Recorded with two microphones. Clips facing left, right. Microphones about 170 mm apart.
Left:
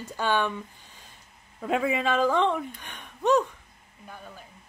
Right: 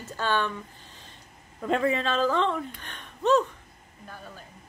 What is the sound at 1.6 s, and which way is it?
Speech, 5° left (ahead or behind).